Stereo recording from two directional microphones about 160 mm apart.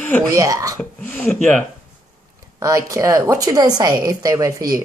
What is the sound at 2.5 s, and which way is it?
Speech, 20° right (ahead or behind).